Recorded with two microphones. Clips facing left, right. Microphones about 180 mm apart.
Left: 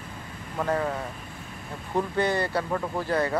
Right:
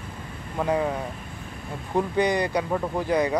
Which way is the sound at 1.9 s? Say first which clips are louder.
Right 2 dB; 15° right (ahead or behind).